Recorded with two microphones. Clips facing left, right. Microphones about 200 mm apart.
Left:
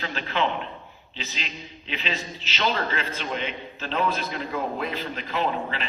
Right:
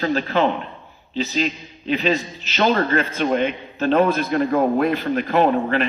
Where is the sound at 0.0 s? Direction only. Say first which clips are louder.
Right 8 dB; 40° right (ahead or behind).